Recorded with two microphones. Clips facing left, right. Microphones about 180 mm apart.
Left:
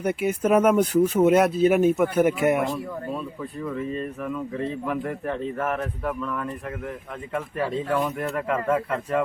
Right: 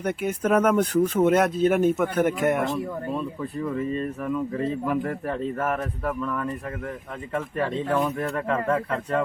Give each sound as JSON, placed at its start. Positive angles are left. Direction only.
{"t": 0.0, "sound": "speech", "side_deg": 5}
{"t": 4.9, "sound": "speech", "side_deg": 0}